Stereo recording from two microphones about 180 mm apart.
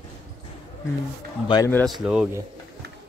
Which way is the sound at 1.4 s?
20° left (ahead or behind).